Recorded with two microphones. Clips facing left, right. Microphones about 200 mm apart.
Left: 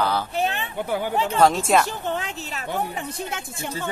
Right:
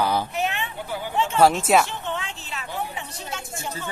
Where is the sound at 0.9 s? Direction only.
40° left (ahead or behind).